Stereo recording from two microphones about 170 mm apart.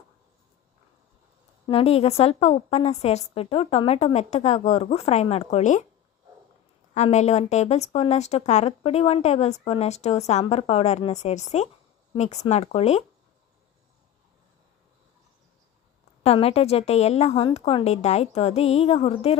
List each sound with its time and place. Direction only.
1.6 s speech: 35° left (ahead or behind)
6.9 s speech: 40° left (ahead or behind)
16.2 s speech: 35° left (ahead or behind)